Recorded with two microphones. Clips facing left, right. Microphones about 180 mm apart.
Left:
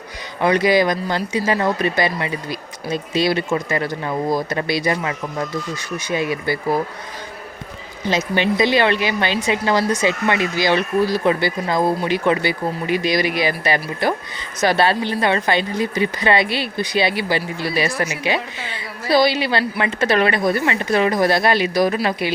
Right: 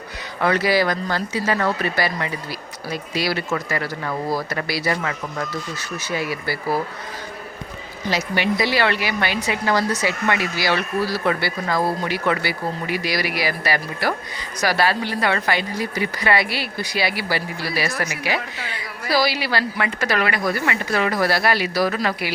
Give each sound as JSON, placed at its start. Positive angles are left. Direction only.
{"t": 0.4, "sound": "a woman's voice", "side_deg": 20}
{"t": 8.0, "sound": "a woman's voice", "side_deg": 20}